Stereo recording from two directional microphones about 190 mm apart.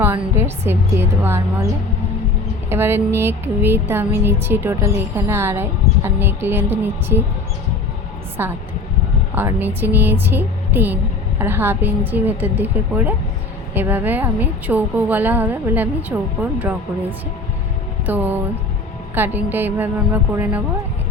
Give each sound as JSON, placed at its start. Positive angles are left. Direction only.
{"t": 0.0, "sound": "a woman's voice", "side_deg": -10}
{"t": 2.6, "sound": "a woman's voice", "side_deg": -10}
{"t": 8.4, "sound": "a woman's voice", "side_deg": -10}
{"t": 18.0, "sound": "music", "side_deg": -10}
{"t": 19.1, "sound": "a woman's voice", "side_deg": -10}